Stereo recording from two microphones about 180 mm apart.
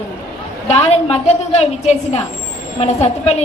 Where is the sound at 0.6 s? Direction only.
35° left (ahead or behind).